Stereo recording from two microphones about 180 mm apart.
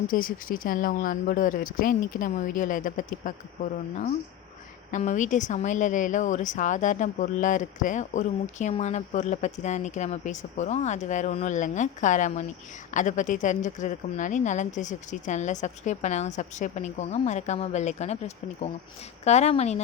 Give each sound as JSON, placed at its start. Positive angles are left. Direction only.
{"t": 0.1, "sound": "a woman's voice", "side_deg": 50}
{"t": 19.2, "sound": "a woman's voice", "side_deg": 40}